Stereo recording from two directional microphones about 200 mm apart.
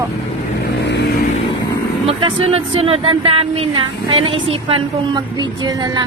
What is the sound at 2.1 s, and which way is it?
Speech, 25° right (ahead or behind).